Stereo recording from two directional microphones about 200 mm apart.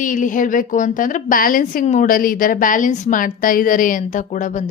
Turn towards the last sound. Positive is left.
turn(degrees=40)  # may be behind; listen again after turning